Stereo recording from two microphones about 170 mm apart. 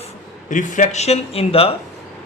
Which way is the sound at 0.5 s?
45° left (ahead or behind).